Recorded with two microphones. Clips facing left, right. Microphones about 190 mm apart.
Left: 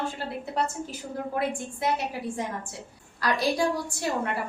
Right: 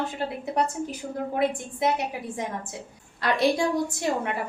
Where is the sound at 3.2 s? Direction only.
25° right (ahead or behind).